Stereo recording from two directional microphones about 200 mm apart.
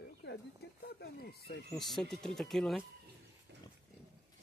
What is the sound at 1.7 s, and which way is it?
Speech, centre (ahead or behind).